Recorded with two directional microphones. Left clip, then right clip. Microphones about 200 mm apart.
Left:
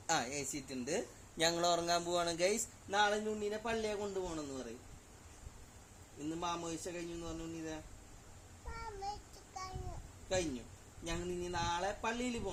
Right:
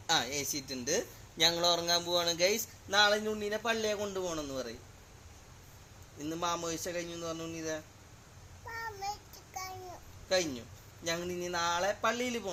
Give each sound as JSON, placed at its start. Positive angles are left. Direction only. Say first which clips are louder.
{"t": 0.1, "sound": "a man's voice", "louder": "right 5 dB", "side_deg": 20}
{"t": 2.9, "sound": "a man's voice", "louder": "right 6 dB", "side_deg": 10}
{"t": 6.2, "sound": "a man's voice", "louder": "right 5 dB", "side_deg": 5}
{"t": 9.5, "sound": "a sound", "louder": "right 4 dB", "side_deg": -10}
{"t": 10.2, "sound": "a man's voice", "louder": "right 6 dB", "side_deg": 10}